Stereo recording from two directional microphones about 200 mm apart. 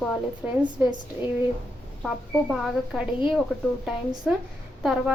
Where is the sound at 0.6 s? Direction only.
20° right (ahead or behind).